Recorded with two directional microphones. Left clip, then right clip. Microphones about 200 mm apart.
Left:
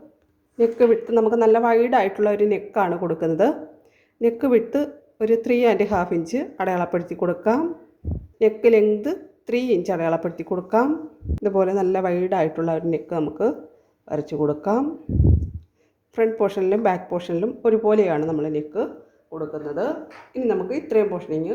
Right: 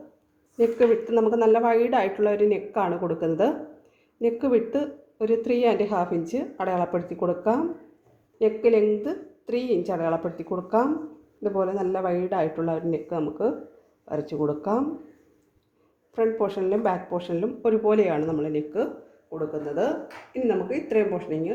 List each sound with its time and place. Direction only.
0.5 s a woman's voice: 15° left (ahead or behind)
16.1 s a woman's voice: 20° left (ahead or behind)